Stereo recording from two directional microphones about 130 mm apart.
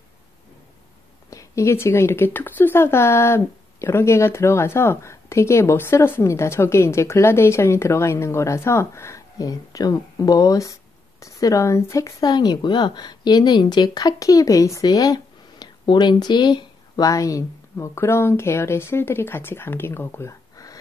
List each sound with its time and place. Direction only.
1.3 s speech: 20° left (ahead or behind)